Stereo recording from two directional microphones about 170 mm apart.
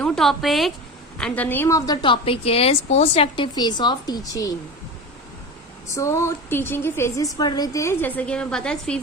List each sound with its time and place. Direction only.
0.0 s a woman's voice: centre (ahead or behind); by 4.5 s 20° left (ahead or behind)
5.9 s a woman's voice: 15° left (ahead or behind)